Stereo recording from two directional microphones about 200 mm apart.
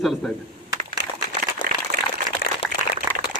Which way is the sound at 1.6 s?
45° right (ahead or behind).